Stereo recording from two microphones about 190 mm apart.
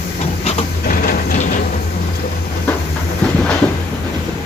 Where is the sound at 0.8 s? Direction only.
50° left (ahead or behind).